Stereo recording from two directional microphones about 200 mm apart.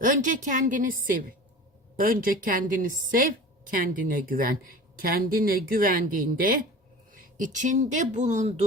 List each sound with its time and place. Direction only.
0.0 s a woman's voice: 40° right (ahead or behind)